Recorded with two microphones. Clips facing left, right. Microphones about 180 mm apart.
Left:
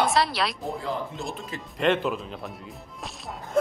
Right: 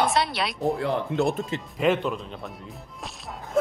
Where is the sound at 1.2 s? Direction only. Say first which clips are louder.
Right 11 dB; 65° right (ahead or behind).